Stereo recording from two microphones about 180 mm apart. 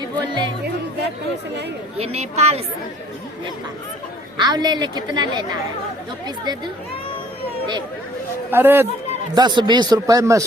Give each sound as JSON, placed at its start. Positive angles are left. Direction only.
{"t": 0.0, "sound": "music", "side_deg": -25}
{"t": 2.0, "sound": "speech", "side_deg": -35}
{"t": 4.4, "sound": "a woman's voice", "side_deg": -25}
{"t": 8.4, "sound": "speech", "side_deg": -10}
{"t": 9.3, "sound": "a woman's voice", "side_deg": -25}